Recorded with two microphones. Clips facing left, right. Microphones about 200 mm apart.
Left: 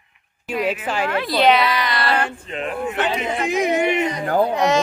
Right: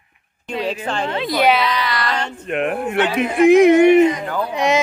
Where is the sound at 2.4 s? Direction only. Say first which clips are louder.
Right 5 dB; 60° right (ahead or behind).